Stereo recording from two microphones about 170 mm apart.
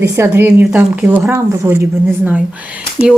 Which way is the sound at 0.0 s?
15° right (ahead or behind).